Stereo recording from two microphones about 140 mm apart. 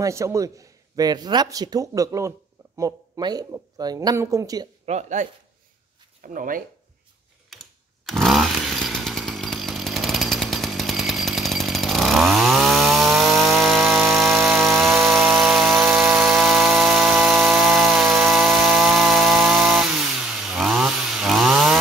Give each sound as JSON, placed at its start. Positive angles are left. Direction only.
{"t": 0.0, "sound": "a man's voice", "side_deg": -20}
{"t": 4.8, "sound": "speech", "side_deg": -55}
{"t": 6.2, "sound": "speech", "side_deg": -75}
{"t": 8.0, "sound": "chainsaw", "side_deg": 5}
{"t": 15.0, "sound": "power tool", "side_deg": 0}
{"t": 19.4, "sound": "chainsaw", "side_deg": 0}